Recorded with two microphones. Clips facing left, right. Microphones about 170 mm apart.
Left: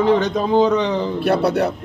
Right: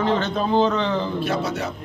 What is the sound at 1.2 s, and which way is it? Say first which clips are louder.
Speech: left 7 dB; 65° left (ahead or behind).